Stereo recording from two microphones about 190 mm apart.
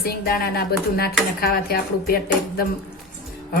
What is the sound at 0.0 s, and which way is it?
A woman's voice, 50° left (ahead or behind).